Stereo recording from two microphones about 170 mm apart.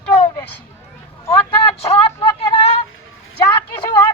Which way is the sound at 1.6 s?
35° left (ahead or behind).